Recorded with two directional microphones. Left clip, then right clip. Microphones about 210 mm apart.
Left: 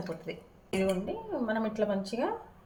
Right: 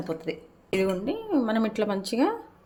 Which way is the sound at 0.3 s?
60° right (ahead or behind).